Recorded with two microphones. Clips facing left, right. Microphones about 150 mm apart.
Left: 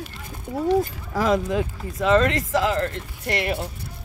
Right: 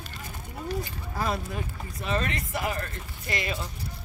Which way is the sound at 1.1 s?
90° left.